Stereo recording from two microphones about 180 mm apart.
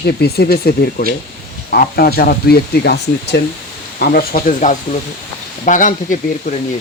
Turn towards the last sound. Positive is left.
turn(degrees=45)  # may be behind; listen again after turning